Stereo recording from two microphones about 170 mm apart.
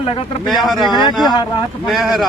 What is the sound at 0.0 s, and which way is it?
Speech, 35° left (ahead or behind).